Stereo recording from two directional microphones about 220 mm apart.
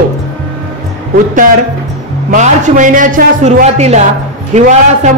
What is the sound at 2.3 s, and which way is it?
A man's voice, 35° right (ahead or behind).